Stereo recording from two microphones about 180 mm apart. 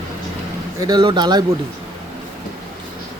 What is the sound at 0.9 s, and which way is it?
Speech, 25° right (ahead or behind).